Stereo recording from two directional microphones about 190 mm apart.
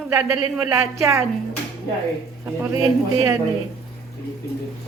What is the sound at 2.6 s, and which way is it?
Speech, 15° right (ahead or behind).